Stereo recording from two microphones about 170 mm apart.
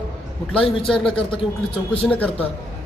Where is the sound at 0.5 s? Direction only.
30° left (ahead or behind).